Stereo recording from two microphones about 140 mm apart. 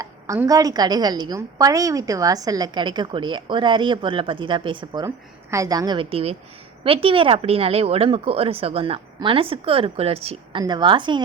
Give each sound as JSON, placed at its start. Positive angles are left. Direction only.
{"t": 0.0, "sound": "a woman's voice", "side_deg": -25}
{"t": 5.0, "sound": "a woman's voice", "side_deg": -20}
{"t": 10.6, "sound": "a woman's voice", "side_deg": -30}